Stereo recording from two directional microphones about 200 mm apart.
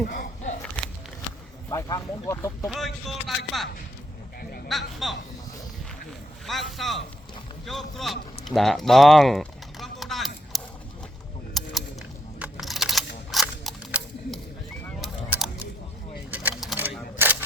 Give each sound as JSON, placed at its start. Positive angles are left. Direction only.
{"t": 1.7, "sound": "speech", "side_deg": 15}
{"t": 2.6, "sound": "speech", "side_deg": 0}
{"t": 4.7, "sound": "speech", "side_deg": 0}
{"t": 6.4, "sound": "speech", "side_deg": 0}
{"t": 7.6, "sound": "a sound", "side_deg": 0}
{"t": 12.4, "sound": "computer keyboard", "side_deg": 0}
{"t": 13.3, "sound": "a sound", "side_deg": 0}
{"t": 15.3, "sound": "scissors", "side_deg": -5}
{"t": 16.3, "sound": "a sound", "side_deg": -5}